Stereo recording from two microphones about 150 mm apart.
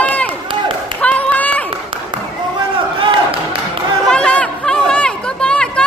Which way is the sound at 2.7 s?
35° right (ahead or behind).